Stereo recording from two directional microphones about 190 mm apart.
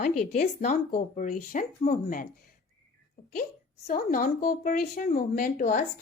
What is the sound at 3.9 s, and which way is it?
Speech, 50° left (ahead or behind).